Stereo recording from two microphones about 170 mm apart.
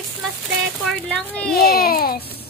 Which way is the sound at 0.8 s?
5° left (ahead or behind).